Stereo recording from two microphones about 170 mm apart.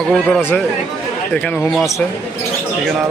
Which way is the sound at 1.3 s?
Centre (ahead or behind).